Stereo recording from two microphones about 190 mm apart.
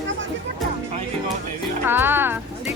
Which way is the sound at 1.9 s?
10° right (ahead or behind).